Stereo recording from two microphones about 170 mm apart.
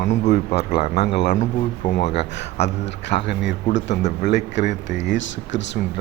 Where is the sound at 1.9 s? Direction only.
90° left.